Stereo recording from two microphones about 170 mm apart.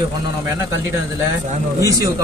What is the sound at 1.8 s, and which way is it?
Speech, 20° right (ahead or behind).